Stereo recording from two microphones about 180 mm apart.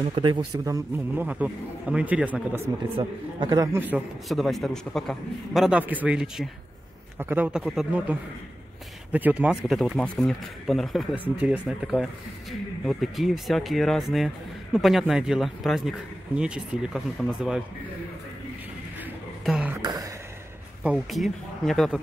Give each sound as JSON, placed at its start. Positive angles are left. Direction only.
{"t": 0.0, "sound": "a man's voice", "side_deg": -30}
{"t": 0.9, "sound": "a man's voice", "side_deg": -10}
{"t": 3.0, "sound": "a man's voice", "side_deg": -25}
{"t": 4.3, "sound": "a man's voice", "side_deg": 0}
{"t": 19.4, "sound": "speech", "side_deg": 0}
{"t": 19.7, "sound": "a sound", "side_deg": -20}
{"t": 20.8, "sound": "speech", "side_deg": -5}